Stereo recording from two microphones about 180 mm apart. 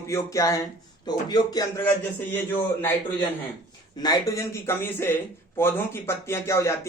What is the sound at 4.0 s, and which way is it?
A man's voice, 20° left (ahead or behind).